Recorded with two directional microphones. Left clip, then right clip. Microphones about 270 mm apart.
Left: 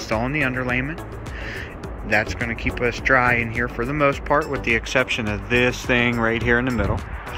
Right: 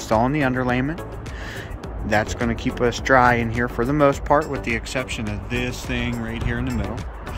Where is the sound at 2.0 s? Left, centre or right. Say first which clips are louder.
Even; centre.